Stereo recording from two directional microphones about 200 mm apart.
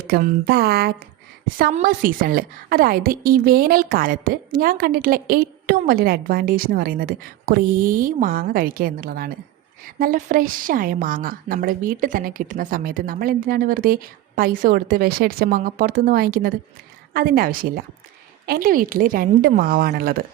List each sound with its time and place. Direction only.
0.0 s a woman's voice: 50° right (ahead or behind)